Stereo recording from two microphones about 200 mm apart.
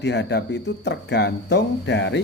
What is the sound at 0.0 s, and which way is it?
Speech, 60° left (ahead or behind).